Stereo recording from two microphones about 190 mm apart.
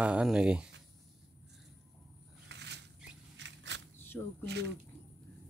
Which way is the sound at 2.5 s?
65° right (ahead or behind).